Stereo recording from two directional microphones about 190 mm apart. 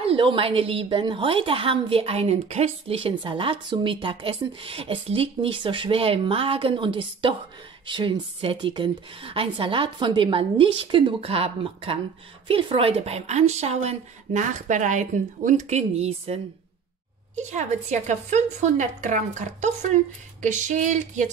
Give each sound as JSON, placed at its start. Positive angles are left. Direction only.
{"t": 0.0, "sound": "a woman's voice", "side_deg": -30}
{"t": 17.4, "sound": "speech", "side_deg": -40}